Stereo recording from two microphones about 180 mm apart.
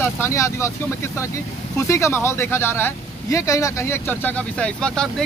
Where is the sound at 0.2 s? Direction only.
15° left (ahead or behind).